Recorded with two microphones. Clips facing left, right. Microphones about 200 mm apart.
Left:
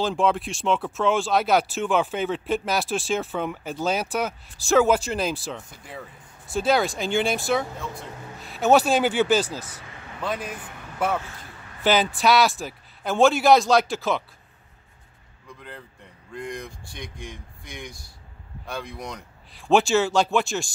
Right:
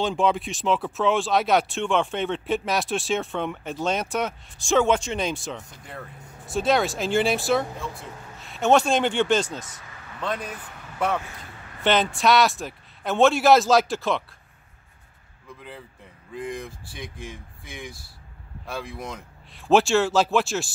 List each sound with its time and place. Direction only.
0.0 s speech: centre (ahead or behind)
9.6 s speech: 35° left (ahead or behind)
10.2 s a man's voice: 5° left (ahead or behind)
15.6 s speech: centre (ahead or behind)